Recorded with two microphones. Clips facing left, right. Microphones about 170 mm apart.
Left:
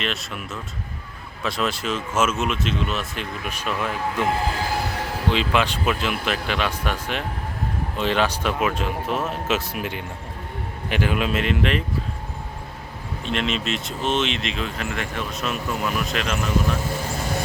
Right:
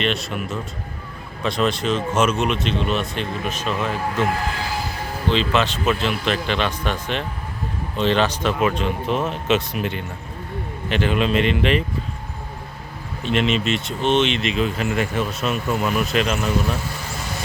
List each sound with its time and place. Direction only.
0.0 s speech: centre (ahead or behind)
3.7 s speech: 20° right (ahead or behind)
4.2 s speech: 10° left (ahead or behind)
4.6 s train: 60° left (ahead or behind); by 5.1 s 75° left (ahead or behind)
5.3 s speech: 10° left (ahead or behind)
13.2 s speech: centre (ahead or behind)